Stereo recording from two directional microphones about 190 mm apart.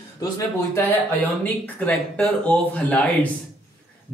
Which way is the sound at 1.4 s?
5° left (ahead or behind).